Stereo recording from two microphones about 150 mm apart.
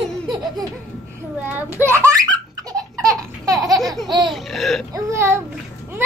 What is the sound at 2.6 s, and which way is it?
Laughter, 25° right (ahead or behind).